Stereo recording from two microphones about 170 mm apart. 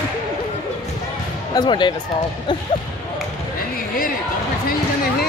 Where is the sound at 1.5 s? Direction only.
25° left (ahead or behind).